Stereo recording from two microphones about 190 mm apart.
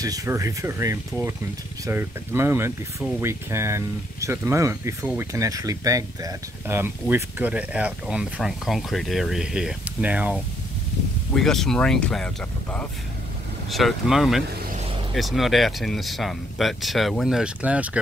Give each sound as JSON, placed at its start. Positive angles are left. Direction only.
{"t": 0.0, "sound": "speech", "side_deg": -20}